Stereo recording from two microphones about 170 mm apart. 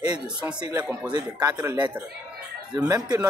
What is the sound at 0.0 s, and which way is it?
Speech, 25° right (ahead or behind).